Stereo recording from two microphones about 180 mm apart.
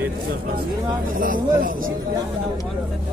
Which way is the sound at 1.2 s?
50° right (ahead or behind).